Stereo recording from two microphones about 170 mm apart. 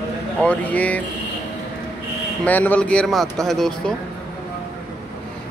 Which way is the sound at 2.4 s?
10° left (ahead or behind).